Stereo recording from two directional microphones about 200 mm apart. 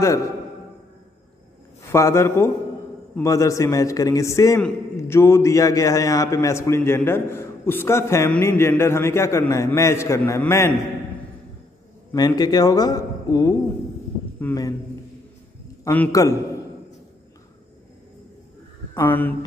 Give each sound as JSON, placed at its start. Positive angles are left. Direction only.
{"t": 1.8, "sound": "a man's voice", "side_deg": 15}
{"t": 12.1, "sound": "a man's voice", "side_deg": 20}
{"t": 15.8, "sound": "a man's voice", "side_deg": 10}
{"t": 18.9, "sound": "a man's voice", "side_deg": 10}